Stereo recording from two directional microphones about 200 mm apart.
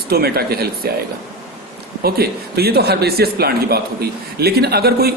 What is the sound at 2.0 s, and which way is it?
Speech, 50° right (ahead or behind).